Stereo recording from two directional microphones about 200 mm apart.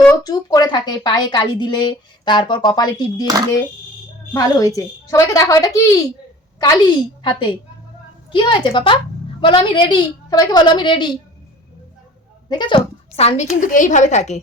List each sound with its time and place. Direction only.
0.2 s a woman's voice: 20° left (ahead or behind)
4.4 s a woman's voice: 15° left (ahead or behind)
12.5 s a woman's voice: 25° left (ahead or behind)